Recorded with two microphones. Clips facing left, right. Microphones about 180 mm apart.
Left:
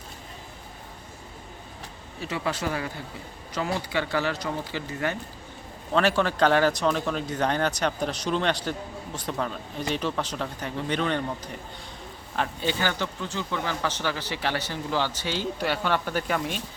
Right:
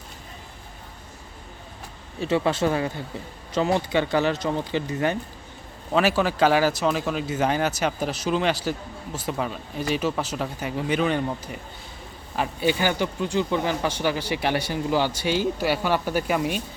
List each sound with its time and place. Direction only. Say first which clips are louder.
2.2 s speech: right 7 dB; 25° right (ahead or behind)
5.9 s speech: right 2 dB; 5° right (ahead or behind)
12.4 s speech: right 4 dB; 10° right (ahead or behind)